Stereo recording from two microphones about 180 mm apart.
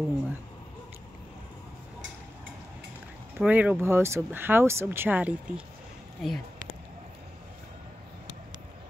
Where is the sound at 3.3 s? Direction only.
10° right (ahead or behind).